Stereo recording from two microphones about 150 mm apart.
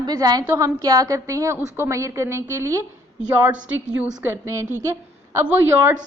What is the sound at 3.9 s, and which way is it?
A woman's voice, 10° right (ahead or behind).